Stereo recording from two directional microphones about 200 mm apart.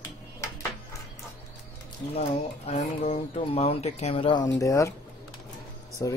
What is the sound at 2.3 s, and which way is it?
Speech, 30° left (ahead or behind).